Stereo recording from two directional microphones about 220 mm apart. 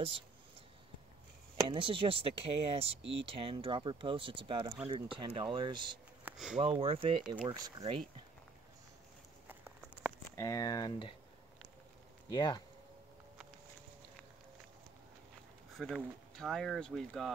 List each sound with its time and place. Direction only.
1.7 s speech: 25° right (ahead or behind)
3.0 s speech: 55° right (ahead or behind)
3.3 s speech: 25° right (ahead or behind)
6.2 s a sound: centre (ahead or behind)
6.5 s speech: 25° right (ahead or behind)
9.5 s a sound: 10° right (ahead or behind)
10.3 s speech: 15° left (ahead or behind)
12.3 s speech: 20° left (ahead or behind)
15.7 s speech: centre (ahead or behind)